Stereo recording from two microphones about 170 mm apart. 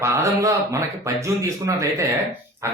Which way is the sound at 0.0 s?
15° right (ahead or behind).